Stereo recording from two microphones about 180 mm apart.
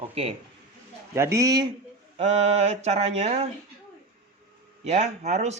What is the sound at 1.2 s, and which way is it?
Speech, 15° right (ahead or behind).